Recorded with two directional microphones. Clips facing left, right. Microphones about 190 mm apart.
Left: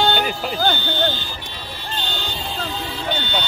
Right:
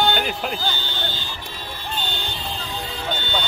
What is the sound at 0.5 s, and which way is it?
Fire alarm, 55° left (ahead or behind).